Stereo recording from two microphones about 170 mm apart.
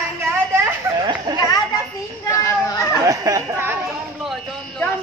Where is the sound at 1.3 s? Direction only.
25° right (ahead or behind).